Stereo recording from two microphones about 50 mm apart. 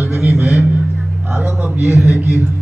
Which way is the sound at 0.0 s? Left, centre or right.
Right.